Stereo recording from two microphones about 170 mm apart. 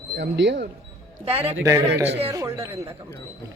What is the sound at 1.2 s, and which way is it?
Speech, 35° right (ahead or behind).